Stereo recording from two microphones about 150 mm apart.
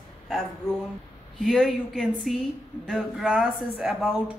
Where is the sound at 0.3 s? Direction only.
5° left (ahead or behind).